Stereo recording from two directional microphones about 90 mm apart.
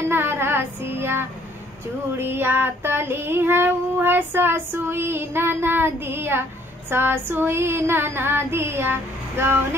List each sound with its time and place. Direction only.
0.1 s child singing: 25° right (ahead or behind)